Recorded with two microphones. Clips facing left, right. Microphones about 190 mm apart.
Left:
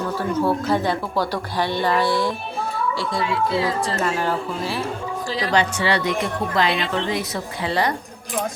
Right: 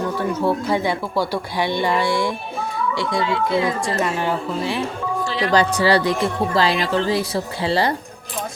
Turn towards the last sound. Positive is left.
turn(degrees=-30)  # may be behind; listen again after turning